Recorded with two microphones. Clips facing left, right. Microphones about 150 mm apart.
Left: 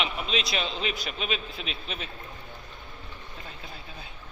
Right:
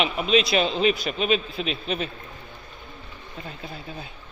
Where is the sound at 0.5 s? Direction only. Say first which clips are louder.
Right 9 dB; 50° right (ahead or behind).